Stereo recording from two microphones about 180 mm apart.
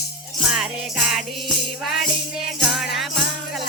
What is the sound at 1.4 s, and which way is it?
Music, centre (ahead or behind).